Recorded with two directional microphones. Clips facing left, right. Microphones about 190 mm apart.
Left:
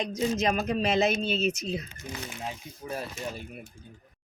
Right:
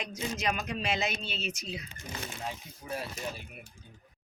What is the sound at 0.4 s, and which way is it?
Speech, 40° left (ahead or behind).